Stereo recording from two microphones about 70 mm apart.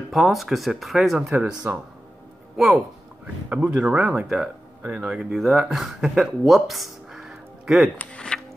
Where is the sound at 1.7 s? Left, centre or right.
Right.